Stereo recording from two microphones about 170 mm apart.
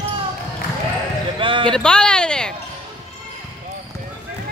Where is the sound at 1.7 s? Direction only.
5° left (ahead or behind).